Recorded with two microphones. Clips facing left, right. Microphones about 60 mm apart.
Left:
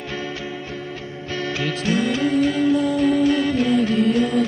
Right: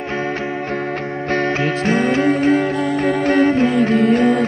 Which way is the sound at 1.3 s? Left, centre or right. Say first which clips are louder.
Right 6 dB; right.